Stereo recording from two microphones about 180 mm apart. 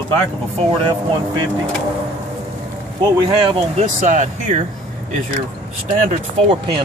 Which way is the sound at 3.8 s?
45° right (ahead or behind).